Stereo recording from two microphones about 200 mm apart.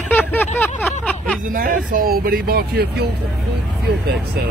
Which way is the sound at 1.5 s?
45° right (ahead or behind).